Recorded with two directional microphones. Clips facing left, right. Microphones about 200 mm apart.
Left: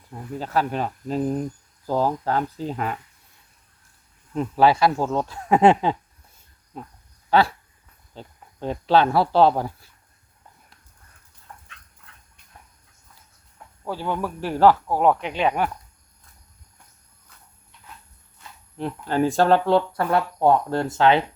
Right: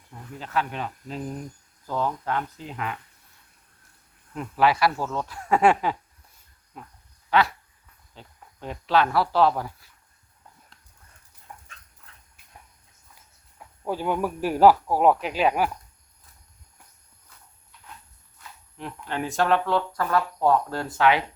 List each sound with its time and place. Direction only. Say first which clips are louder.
0.1 s speech: left 5 dB; 40° left (ahead or behind)
4.4 s speech: left 4 dB; 30° left (ahead or behind)
11.5 s dog: even; 15° right (ahead or behind)
12.0 s dog: left 1 dB; 5° right (ahead or behind)
13.8 s speech: right 1 dB; 15° right (ahead or behind)
18.8 s speech: left 9 dB; 35° left (ahead or behind)